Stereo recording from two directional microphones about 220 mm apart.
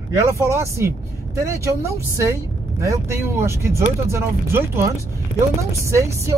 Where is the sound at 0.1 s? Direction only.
15° right (ahead or behind).